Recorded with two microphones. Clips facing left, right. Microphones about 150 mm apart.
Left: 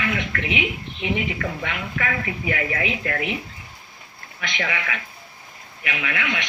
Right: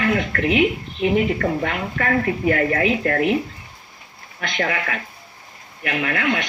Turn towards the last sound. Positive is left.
turn(degrees=-40)  # may be behind; listen again after turning